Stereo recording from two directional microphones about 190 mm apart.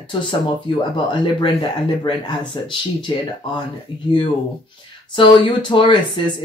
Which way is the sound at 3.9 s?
25° left (ahead or behind).